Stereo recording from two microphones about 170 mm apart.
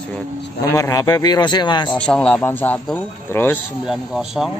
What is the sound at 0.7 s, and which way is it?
Speech, 20° left (ahead or behind).